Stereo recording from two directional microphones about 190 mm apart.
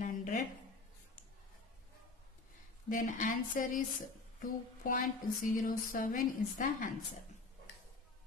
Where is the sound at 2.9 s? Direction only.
45° left (ahead or behind).